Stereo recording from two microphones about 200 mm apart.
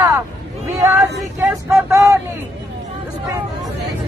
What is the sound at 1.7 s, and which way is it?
Speech, 15° right (ahead or behind).